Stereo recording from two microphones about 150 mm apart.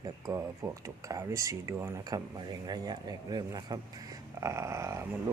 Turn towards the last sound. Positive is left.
turn(degrees=-20)  # may be behind; listen again after turning